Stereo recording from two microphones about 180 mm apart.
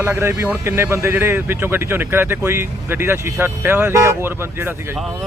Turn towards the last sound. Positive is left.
turn(degrees=-15)  # may be behind; listen again after turning